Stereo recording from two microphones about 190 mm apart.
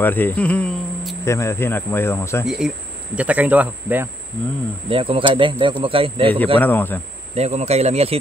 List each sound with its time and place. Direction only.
0.0 s speech: 10° left (ahead or behind)
2.4 s speech: 5° right (ahead or behind)
4.8 s speech: 30° right (ahead or behind)
6.6 s speech: 10° left (ahead or behind)
7.3 s speech: 35° right (ahead or behind)